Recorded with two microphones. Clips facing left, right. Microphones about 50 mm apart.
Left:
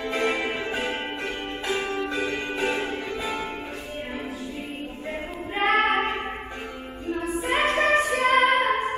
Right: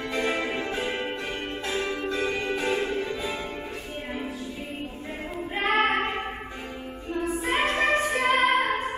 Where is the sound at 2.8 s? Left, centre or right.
Left.